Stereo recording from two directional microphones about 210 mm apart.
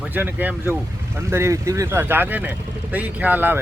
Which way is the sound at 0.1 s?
10° right (ahead or behind).